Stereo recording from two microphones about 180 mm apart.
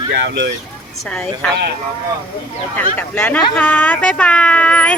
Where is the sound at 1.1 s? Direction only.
10° left (ahead or behind).